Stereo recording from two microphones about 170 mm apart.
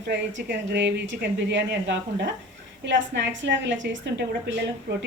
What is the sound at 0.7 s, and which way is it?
A woman's voice, 85° right.